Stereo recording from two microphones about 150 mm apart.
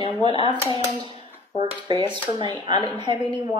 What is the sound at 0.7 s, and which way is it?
Typewriter, 35° left (ahead or behind).